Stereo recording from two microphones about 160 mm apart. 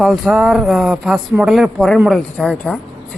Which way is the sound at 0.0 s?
Centre (ahead or behind).